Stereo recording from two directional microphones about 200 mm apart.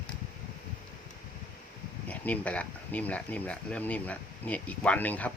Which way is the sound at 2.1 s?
5° left (ahead or behind).